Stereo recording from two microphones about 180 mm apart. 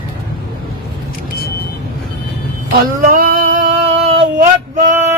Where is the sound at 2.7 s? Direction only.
55° right (ahead or behind); by 4.2 s 35° right (ahead or behind).